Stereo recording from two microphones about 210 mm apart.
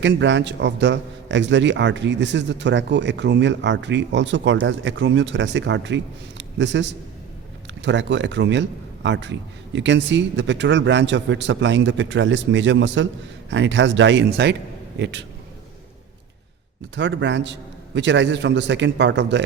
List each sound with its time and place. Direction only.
0.0 s a man's voice: 60° right (ahead or behind)
16.9 s a man's voice: 60° right (ahead or behind)